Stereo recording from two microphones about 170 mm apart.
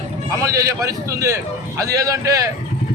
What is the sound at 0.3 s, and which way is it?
A man's voice, 20° right (ahead or behind).